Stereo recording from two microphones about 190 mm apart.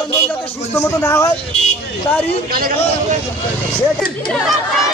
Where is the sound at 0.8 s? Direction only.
15° left (ahead or behind).